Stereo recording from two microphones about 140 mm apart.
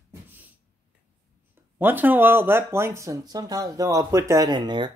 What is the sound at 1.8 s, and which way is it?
Speech, 15° right (ahead or behind).